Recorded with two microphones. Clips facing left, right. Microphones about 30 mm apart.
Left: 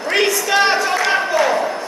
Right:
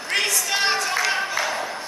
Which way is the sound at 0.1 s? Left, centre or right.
Centre.